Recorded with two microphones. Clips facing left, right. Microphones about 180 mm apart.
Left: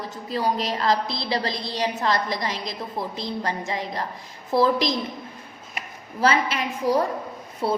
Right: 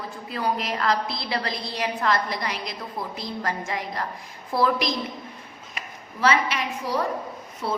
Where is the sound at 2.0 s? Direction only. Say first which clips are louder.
Right 2 dB; 25° left (ahead or behind).